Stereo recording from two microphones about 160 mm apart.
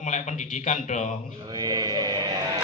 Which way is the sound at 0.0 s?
50° left (ahead or behind).